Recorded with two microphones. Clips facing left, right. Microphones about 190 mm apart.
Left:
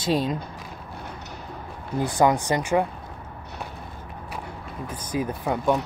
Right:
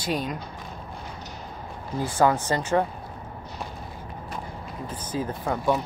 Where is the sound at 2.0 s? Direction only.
15° left (ahead or behind).